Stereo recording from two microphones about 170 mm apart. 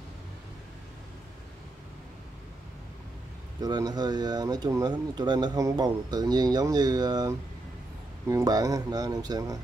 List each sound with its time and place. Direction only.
3.6 s speech: 25° right (ahead or behind)